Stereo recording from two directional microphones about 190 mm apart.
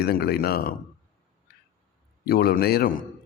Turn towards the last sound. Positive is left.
turn(degrees=50)  # may be behind; listen again after turning